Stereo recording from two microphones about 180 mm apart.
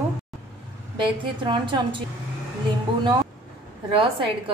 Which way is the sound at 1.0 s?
25° right (ahead or behind).